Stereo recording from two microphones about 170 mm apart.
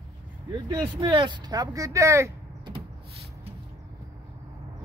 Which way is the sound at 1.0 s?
30° right (ahead or behind).